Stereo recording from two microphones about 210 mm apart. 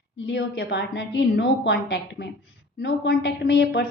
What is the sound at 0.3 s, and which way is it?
A woman's voice, 55° left (ahead or behind).